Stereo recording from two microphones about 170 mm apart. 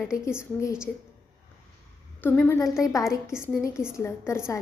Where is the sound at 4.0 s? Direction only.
15° left (ahead or behind).